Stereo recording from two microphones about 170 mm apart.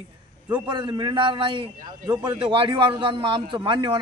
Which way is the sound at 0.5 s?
30° right (ahead or behind).